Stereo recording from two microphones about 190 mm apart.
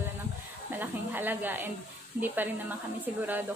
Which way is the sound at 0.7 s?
10° right (ahead or behind).